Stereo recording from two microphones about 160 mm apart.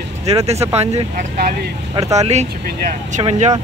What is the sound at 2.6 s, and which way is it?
Speech, 65° right (ahead or behind).